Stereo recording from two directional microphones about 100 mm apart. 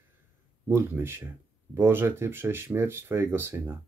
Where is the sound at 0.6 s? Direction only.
20° right (ahead or behind).